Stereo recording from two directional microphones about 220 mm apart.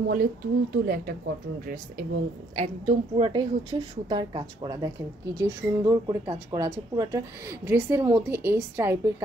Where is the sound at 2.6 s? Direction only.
25° right (ahead or behind).